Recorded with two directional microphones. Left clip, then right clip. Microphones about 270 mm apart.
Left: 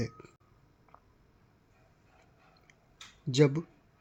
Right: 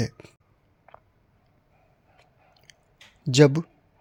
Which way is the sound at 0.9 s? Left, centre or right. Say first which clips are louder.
Right 9 dB; right.